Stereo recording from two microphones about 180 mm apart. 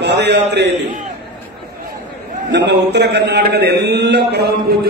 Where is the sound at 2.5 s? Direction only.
70° right (ahead or behind).